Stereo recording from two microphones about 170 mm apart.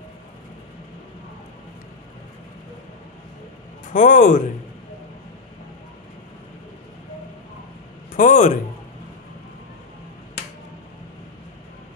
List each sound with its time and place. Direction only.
3.9 s a man's voice: 45° left (ahead or behind)
8.2 s a man's voice: 45° left (ahead or behind)